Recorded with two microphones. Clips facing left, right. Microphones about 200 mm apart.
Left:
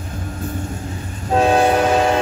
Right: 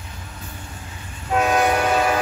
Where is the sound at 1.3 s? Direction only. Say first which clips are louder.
Left 4 dB; 30° left (ahead or behind).